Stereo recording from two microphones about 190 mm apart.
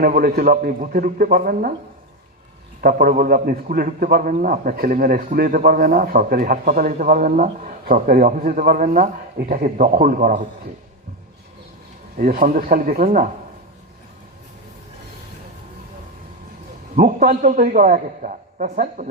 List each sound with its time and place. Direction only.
0.0 s a man's voice: 50° right (ahead or behind)
2.8 s a man's voice: 50° right (ahead or behind)
12.1 s a man's voice: 50° right (ahead or behind)
16.9 s a man's voice: 40° right (ahead or behind)